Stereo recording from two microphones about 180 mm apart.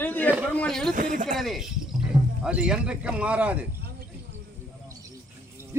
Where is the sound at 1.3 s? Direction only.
Centre (ahead or behind).